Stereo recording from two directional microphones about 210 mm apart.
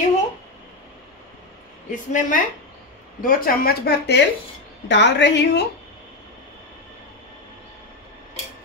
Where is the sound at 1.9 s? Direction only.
35° left (ahead or behind); by 5.6 s 55° left (ahead or behind).